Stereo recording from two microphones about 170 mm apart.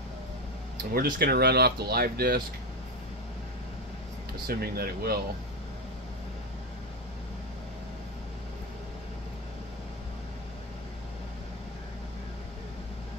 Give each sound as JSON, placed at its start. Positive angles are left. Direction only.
{"t": 0.9, "sound": "speech", "side_deg": -60}
{"t": 4.5, "sound": "speech", "side_deg": -65}